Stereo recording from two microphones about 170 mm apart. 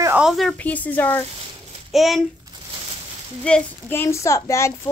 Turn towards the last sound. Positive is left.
turn(degrees=15)  # may be behind; listen again after turning